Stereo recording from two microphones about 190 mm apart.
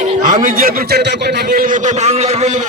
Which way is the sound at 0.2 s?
40° right (ahead or behind).